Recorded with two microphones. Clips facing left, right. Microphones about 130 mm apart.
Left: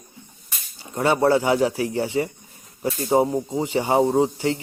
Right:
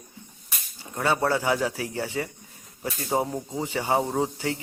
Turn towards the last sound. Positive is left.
turn(degrees=20)  # may be behind; listen again after turning